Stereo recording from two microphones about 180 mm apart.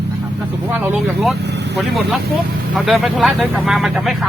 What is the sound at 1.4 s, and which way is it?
Speech, 70° right (ahead or behind).